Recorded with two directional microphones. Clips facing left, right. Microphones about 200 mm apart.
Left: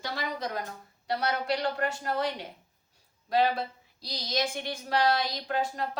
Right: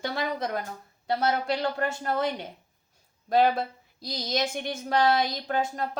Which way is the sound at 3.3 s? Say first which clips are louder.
Right 4 dB; 50° right (ahead or behind).